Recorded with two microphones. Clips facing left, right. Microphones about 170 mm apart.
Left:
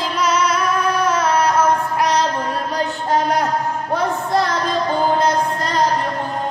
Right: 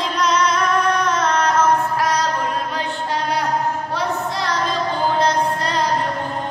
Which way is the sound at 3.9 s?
50° left (ahead or behind).